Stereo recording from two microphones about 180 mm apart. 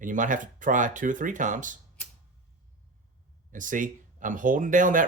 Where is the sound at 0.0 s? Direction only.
45° right (ahead or behind).